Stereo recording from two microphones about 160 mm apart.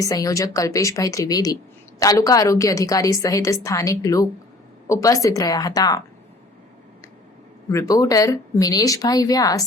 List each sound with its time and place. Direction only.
0.0 s a woman's voice: 20° left (ahead or behind)
7.7 s a woman's voice: 20° left (ahead or behind)